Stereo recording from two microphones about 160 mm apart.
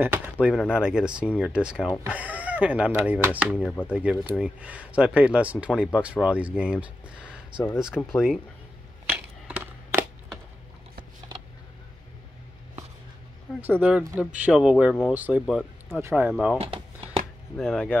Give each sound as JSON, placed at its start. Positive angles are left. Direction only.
{"t": 0.0, "sound": "speech", "side_deg": -10}
{"t": 9.0, "sound": "a sound", "side_deg": -10}
{"t": 13.6, "sound": "speech", "side_deg": -10}
{"t": 15.4, "sound": "speech", "side_deg": 0}
{"t": 16.0, "sound": "speech", "side_deg": -15}
{"t": 16.5, "sound": "a sound", "side_deg": -40}
{"t": 17.6, "sound": "speech", "side_deg": 5}